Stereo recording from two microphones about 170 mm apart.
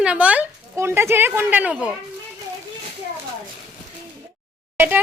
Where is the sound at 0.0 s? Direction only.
5° right (ahead or behind).